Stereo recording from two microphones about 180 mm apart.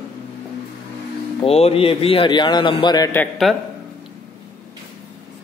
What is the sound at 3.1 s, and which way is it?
Speech, 10° left (ahead or behind).